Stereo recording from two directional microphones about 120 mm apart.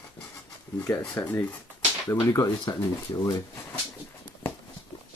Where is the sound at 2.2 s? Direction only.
30° left (ahead or behind).